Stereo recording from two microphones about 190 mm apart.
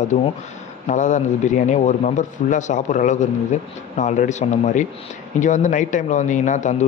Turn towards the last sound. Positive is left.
turn(degrees=40)  # may be behind; listen again after turning